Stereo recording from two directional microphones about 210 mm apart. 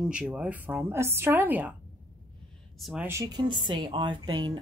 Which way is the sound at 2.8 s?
5° right (ahead or behind).